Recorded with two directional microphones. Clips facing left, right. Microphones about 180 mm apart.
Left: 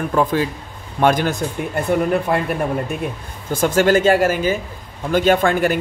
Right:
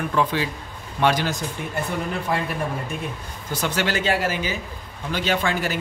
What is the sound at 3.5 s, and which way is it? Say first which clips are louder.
Speech: left 10 dB; 45° left (ahead or behind).